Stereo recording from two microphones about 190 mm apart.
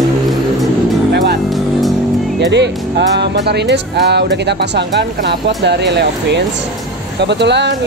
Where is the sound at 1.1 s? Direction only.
60° right (ahead or behind).